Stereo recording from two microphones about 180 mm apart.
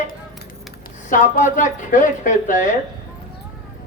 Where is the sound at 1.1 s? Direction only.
45° left (ahead or behind).